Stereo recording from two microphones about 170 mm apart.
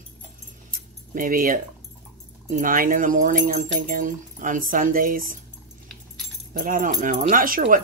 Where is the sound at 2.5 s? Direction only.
55° right (ahead or behind).